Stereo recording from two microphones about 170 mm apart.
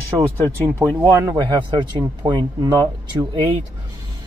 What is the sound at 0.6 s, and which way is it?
Speech, 15° right (ahead or behind).